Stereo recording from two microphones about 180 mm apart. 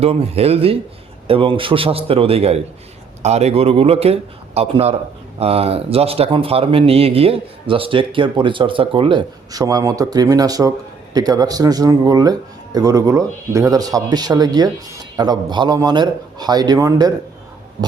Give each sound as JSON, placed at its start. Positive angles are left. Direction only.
{"t": 0.0, "sound": "a man's voice", "side_deg": -35}